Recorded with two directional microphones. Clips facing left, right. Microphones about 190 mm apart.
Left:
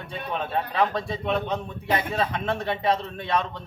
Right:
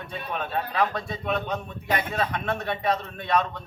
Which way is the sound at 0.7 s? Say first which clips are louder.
Left 2 dB; 30° left (ahead or behind).